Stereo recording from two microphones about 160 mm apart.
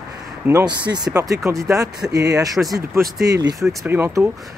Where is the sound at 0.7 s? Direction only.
25° right (ahead or behind).